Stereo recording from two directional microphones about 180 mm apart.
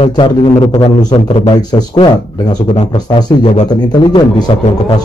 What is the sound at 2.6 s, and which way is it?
Speech, 40° left (ahead or behind).